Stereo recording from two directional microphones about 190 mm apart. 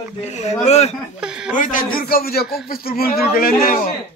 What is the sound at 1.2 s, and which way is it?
Speech, 5° right (ahead or behind).